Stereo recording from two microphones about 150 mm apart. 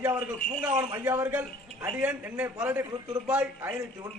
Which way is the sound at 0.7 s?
25° right (ahead or behind).